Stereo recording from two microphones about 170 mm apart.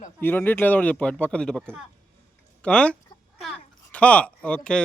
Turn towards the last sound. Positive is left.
turn(degrees=5)  # may be behind; listen again after turning